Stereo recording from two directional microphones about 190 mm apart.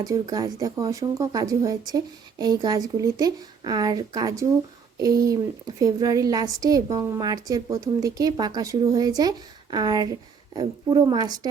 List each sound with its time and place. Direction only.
0.0 s a woman's voice: 20° right (ahead or behind)